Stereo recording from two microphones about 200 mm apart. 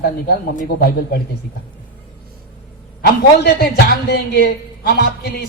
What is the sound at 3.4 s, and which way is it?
A woman's voice, 50° left (ahead or behind).